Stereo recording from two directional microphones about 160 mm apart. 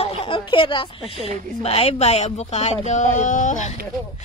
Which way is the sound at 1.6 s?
40° left (ahead or behind).